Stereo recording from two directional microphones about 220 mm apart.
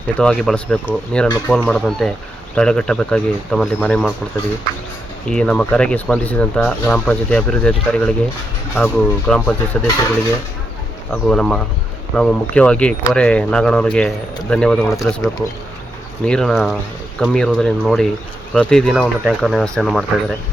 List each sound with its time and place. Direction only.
0.2 s speech: 5° left (ahead or behind)
5.3 s speech: 5° left (ahead or behind)
11.1 s speech: 5° left (ahead or behind)
14.9 s speech: 15° left (ahead or behind)
16.2 s speech: centre (ahead or behind)